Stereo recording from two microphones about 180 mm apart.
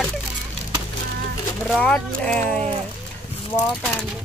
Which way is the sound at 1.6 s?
5° left (ahead or behind).